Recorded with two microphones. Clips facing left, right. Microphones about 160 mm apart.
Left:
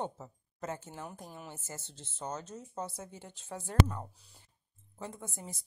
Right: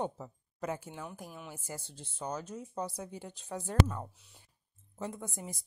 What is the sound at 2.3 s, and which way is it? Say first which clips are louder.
Speech: right 2 dB; 10° right (ahead or behind).